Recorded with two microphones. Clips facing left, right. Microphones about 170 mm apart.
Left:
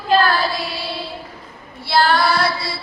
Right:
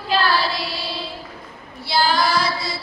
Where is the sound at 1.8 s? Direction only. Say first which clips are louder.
Left 3 dB; 60° left (ahead or behind).